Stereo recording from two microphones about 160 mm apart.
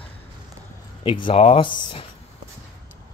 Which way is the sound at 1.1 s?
30° left (ahead or behind).